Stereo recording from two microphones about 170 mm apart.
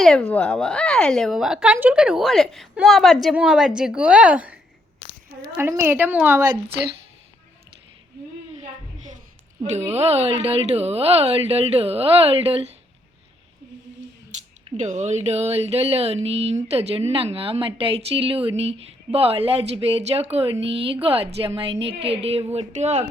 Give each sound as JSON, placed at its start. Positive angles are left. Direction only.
{"t": 0.0, "sound": "a woman's voice", "side_deg": 5}
{"t": 5.5, "sound": "a woman's voice", "side_deg": -15}
{"t": 9.9, "sound": "a woman's voice", "side_deg": -40}
{"t": 14.8, "sound": "a woman's voice", "side_deg": -45}
{"t": 22.5, "sound": "a sound", "side_deg": -40}